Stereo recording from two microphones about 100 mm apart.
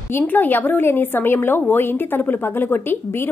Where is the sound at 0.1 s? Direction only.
20° left (ahead or behind).